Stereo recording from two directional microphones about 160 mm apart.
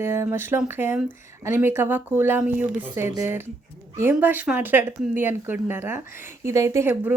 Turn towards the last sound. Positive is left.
turn(degrees=-15)  # may be behind; listen again after turning